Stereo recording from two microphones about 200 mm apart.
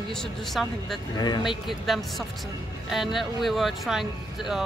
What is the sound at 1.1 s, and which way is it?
Speech, 20° left (ahead or behind).